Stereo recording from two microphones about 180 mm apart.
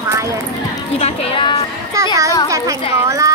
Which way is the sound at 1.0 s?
30° left (ahead or behind).